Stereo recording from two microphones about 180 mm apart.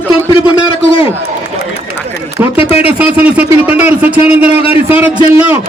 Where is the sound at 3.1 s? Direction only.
10° right (ahead or behind).